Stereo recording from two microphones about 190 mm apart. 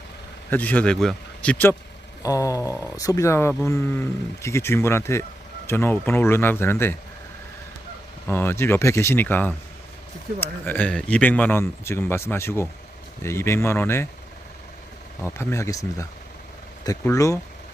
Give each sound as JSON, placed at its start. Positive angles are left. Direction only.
{"t": 0.5, "sound": "speech", "side_deg": 10}
{"t": 8.3, "sound": "speech", "side_deg": 10}
{"t": 15.2, "sound": "speech", "side_deg": 15}